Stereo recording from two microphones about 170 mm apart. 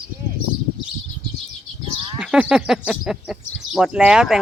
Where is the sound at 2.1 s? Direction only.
5° right (ahead or behind).